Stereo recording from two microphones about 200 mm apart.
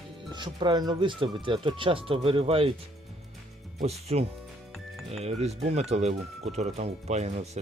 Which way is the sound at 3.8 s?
30° right (ahead or behind).